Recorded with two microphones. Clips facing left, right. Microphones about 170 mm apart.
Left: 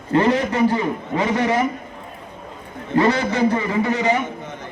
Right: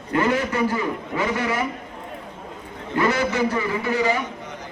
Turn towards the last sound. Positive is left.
turn(degrees=25)  # may be behind; listen again after turning